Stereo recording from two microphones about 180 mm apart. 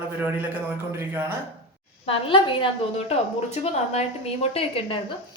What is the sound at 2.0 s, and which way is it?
A woman's voice, 30° left (ahead or behind).